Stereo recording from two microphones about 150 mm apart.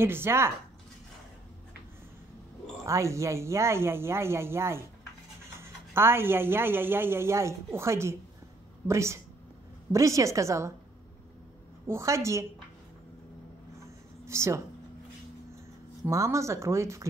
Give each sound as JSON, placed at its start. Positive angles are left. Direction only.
{"t": 0.0, "sound": "speech", "side_deg": -15}
{"t": 2.8, "sound": "speech", "side_deg": -20}
{"t": 11.9, "sound": "speech", "side_deg": -20}
{"t": 14.2, "sound": "speech", "side_deg": -20}
{"t": 16.1, "sound": "speech", "side_deg": -20}